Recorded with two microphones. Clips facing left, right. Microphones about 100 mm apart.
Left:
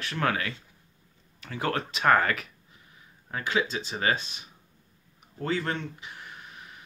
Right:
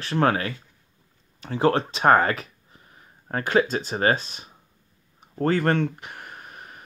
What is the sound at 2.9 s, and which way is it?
Speech, 45° right (ahead or behind).